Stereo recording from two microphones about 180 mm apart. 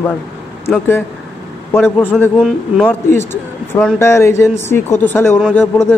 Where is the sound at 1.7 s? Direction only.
10° left (ahead or behind).